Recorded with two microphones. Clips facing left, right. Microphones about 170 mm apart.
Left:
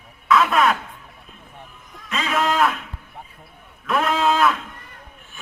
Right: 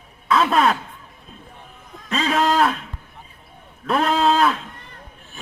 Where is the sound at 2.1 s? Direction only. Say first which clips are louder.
Right 3 dB; 35° right (ahead or behind).